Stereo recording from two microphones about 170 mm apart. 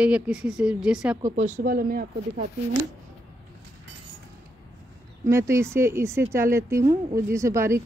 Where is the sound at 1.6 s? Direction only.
60° right (ahead or behind).